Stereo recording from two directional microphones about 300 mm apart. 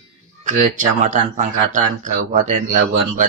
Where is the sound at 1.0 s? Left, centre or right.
Right.